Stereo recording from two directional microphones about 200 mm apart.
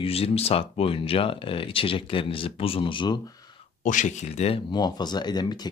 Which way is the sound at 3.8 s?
40° left (ahead or behind).